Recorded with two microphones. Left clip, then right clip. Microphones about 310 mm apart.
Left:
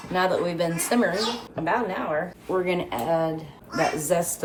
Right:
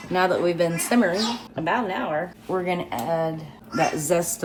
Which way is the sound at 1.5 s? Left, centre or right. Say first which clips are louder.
Right 2 dB; right.